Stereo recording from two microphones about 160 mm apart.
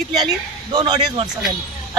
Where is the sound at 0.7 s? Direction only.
25° right (ahead or behind).